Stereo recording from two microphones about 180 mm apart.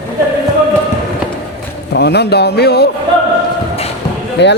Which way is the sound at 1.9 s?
65° left (ahead or behind).